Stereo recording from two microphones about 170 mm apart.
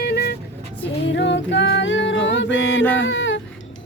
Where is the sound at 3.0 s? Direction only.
90° left.